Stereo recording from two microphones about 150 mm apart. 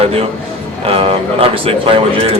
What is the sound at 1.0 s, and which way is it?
Speech, 40° right (ahead or behind).